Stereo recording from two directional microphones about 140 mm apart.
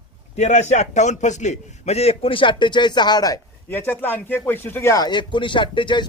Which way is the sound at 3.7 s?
15° left (ahead or behind).